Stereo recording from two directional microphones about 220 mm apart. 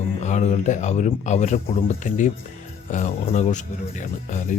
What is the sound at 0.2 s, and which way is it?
Speech, 30° left (ahead or behind).